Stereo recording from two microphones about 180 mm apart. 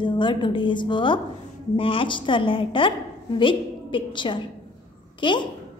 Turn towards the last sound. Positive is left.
turn(degrees=25)  # may be behind; listen again after turning